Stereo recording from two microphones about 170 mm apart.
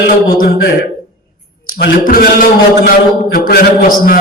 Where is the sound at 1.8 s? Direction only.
55° left (ahead or behind).